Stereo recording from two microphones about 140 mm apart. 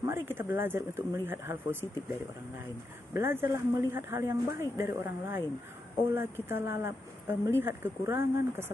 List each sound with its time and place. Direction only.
0.0 s speech: 15° right (ahead or behind)
3.1 s speech: 15° right (ahead or behind)